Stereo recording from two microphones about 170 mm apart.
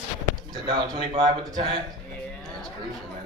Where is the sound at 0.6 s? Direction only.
25° right (ahead or behind).